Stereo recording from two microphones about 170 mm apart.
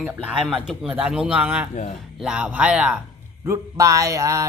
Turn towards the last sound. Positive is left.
turn(degrees=-20)  # may be behind; listen again after turning